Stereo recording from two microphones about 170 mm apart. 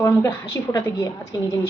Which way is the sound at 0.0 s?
15° left (ahead or behind).